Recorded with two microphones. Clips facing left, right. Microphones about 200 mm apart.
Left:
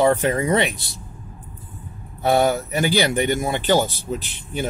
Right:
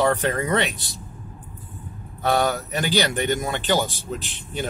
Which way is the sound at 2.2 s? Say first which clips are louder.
Left 4 dB; 10° left (ahead or behind).